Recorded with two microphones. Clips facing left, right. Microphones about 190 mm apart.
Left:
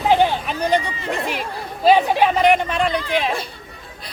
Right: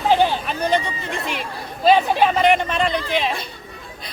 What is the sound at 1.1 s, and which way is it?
Speech, 40° left (ahead or behind).